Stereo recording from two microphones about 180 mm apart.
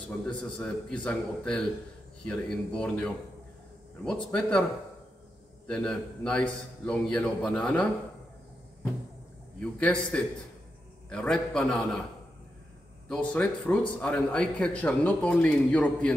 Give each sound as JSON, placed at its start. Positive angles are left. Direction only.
{"t": 0.3, "sound": "a man's voice", "side_deg": 10}
{"t": 5.7, "sound": "a man's voice", "side_deg": 5}
{"t": 9.6, "sound": "a man's voice", "side_deg": 5}
{"t": 13.1, "sound": "a man's voice", "side_deg": 5}